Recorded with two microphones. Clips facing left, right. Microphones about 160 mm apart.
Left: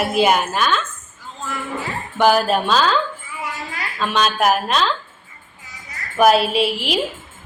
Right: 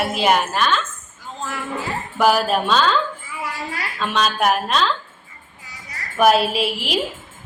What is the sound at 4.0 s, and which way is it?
Speech, centre (ahead or behind).